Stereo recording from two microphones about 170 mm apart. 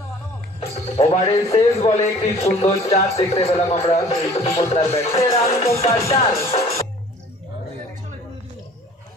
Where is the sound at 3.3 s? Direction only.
35° left (ahead or behind).